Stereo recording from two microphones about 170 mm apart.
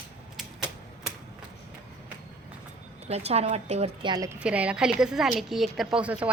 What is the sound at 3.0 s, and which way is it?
Speech, 40° right (ahead or behind).